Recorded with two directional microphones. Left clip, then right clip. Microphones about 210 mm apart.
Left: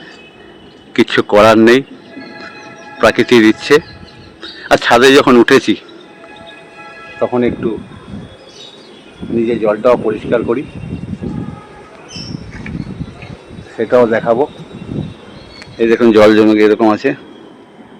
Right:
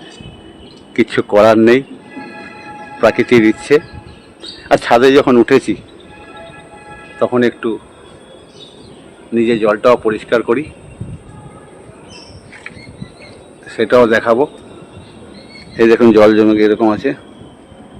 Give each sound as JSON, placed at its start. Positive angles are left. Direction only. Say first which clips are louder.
{"t": 0.9, "sound": "speech", "louder": "left 2 dB", "side_deg": 10}
{"t": 3.0, "sound": "speech", "louder": "left 1 dB", "side_deg": 10}
{"t": 7.2, "sound": "speech", "louder": "right 1 dB", "side_deg": -10}
{"t": 9.3, "sound": "speech", "louder": "right 1 dB", "side_deg": -15}
{"t": 13.7, "sound": "speech", "louder": "right 1 dB", "side_deg": -15}
{"t": 16.1, "sound": "speech", "louder": "left 1 dB", "side_deg": 10}